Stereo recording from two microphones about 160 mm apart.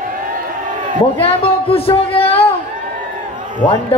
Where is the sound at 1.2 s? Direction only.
35° left (ahead or behind).